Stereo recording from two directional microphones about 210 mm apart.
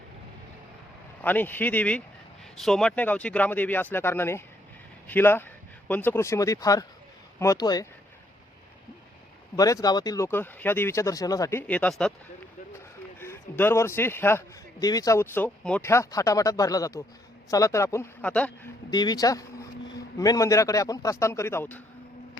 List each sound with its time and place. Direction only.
1.2 s a man's voice: 10° left (ahead or behind)
9.6 s a man's voice: 15° left (ahead or behind)
13.1 s a man's voice: 10° left (ahead or behind)
18.9 s a man's voice: 20° left (ahead or behind)